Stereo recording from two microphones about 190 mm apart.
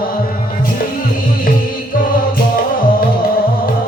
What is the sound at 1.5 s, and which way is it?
Music, 50° left (ahead or behind).